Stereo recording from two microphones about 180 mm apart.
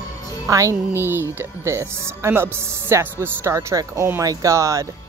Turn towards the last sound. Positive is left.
turn(degrees=-15)  # may be behind; listen again after turning